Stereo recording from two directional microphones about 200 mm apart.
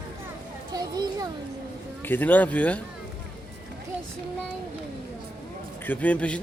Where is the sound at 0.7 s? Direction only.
20° right (ahead or behind).